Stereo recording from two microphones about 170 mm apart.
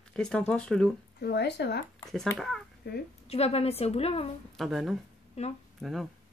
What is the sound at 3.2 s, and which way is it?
A woman's voice, 35° left (ahead or behind).